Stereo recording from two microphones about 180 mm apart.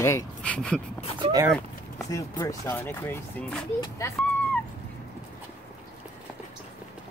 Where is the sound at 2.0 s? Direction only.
20° left (ahead or behind).